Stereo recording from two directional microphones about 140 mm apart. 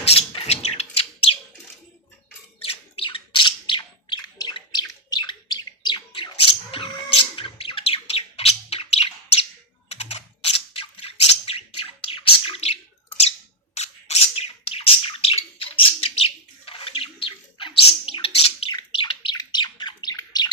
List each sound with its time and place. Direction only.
0.0 s a sound: 45° left (ahead or behind)
2.6 s bird: 40° left (ahead or behind)
9.9 s typing: 50° left (ahead or behind)
13.7 s bird: 50° left (ahead or behind); by 20.5 s 30° left (ahead or behind)